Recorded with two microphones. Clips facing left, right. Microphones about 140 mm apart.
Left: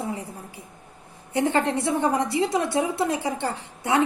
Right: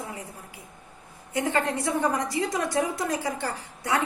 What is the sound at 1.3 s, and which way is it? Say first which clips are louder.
A woman's voice: left 4 dB; 30° left (ahead or behind).